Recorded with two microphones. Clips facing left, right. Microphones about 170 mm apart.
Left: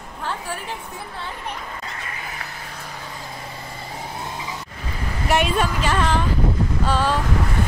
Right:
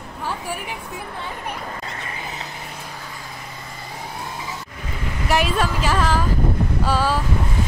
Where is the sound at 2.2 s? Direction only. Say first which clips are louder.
Right 2 dB; 25° right (ahead or behind).